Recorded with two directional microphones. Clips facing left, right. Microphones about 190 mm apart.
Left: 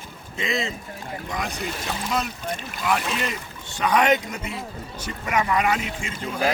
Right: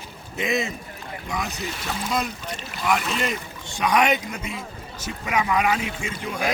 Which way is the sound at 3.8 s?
10° right (ahead or behind).